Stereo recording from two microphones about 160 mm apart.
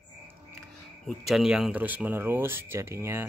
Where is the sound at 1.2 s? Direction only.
5° right (ahead or behind).